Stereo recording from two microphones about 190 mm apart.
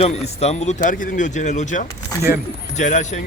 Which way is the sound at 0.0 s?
35° left (ahead or behind).